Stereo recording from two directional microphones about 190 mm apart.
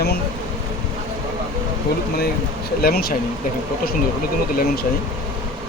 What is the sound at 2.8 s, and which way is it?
Speech, 55° left (ahead or behind).